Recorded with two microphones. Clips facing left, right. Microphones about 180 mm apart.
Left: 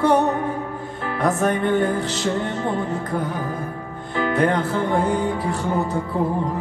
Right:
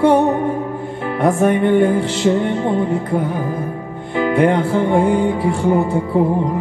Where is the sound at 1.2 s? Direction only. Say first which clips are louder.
Right 6 dB; 10° right (ahead or behind).